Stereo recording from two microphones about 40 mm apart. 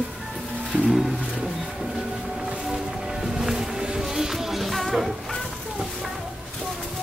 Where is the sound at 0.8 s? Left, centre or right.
Centre.